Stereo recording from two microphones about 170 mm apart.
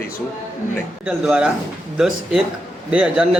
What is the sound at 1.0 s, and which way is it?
A man's voice, 5° right (ahead or behind).